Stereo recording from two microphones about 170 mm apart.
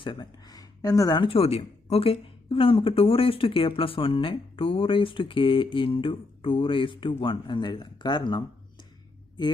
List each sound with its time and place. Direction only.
0.0 s speech: 30° left (ahead or behind)